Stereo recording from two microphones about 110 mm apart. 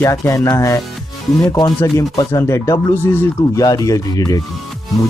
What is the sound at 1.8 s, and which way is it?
Speech, 30° left (ahead or behind).